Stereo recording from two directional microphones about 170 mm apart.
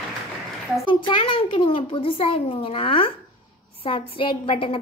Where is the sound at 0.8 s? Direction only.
30° left (ahead or behind).